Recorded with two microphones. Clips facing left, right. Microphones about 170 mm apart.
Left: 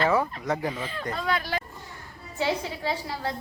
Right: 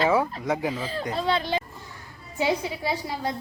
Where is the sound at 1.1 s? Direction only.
30° right (ahead or behind).